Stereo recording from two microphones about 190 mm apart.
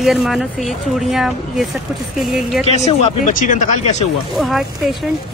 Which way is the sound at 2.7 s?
35° left (ahead or behind).